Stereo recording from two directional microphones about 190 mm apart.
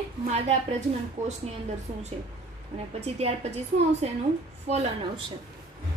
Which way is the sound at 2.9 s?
35° right (ahead or behind).